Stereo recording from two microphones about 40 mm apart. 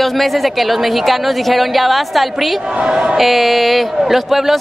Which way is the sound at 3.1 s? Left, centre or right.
Centre.